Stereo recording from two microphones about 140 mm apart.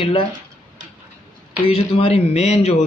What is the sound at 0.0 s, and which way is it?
Speech, 40° left (ahead or behind).